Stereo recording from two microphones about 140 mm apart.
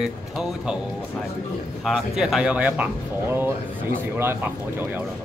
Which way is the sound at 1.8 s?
Centre (ahead or behind).